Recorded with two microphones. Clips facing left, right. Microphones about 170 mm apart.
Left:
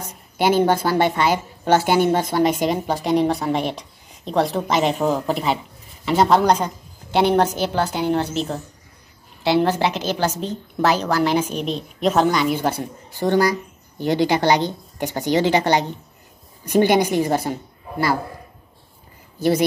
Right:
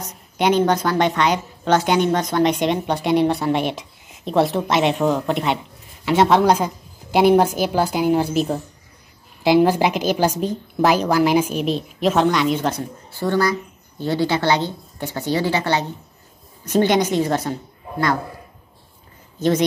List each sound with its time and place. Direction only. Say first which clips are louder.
0.4 s a woman's voice: even; 5° left (ahead or behind)